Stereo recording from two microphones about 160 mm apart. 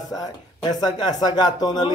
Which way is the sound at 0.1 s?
25° left (ahead or behind).